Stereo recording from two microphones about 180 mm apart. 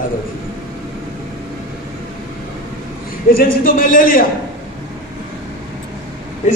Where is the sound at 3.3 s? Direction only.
50° left (ahead or behind).